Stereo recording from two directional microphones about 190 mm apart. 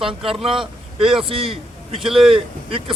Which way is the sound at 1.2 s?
30° right (ahead or behind).